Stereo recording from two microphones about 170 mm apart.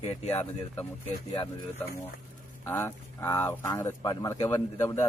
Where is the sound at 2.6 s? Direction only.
15° left (ahead or behind).